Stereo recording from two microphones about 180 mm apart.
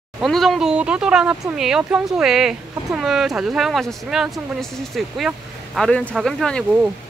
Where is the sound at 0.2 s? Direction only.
Centre (ahead or behind).